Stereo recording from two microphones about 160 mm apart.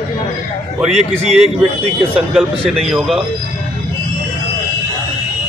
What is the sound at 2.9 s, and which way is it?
Speech, centre (ahead or behind).